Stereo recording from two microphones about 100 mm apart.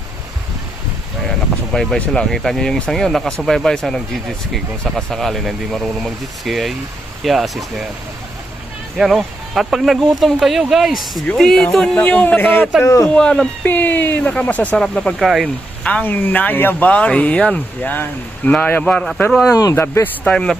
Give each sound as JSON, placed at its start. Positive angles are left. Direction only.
{"t": 1.7, "sound": "speech", "side_deg": 5}
{"t": 9.0, "sound": "speech", "side_deg": 0}
{"t": 12.8, "sound": "speech", "side_deg": 30}
{"t": 13.1, "sound": "speech", "side_deg": 5}
{"t": 13.7, "sound": "speech", "side_deg": 20}
{"t": 19.5, "sound": "speech", "side_deg": 35}
{"t": 19.7, "sound": "speech", "side_deg": 25}
{"t": 20.3, "sound": "speech", "side_deg": 5}